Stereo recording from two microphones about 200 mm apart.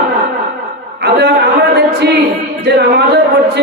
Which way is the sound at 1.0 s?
55° right (ahead or behind).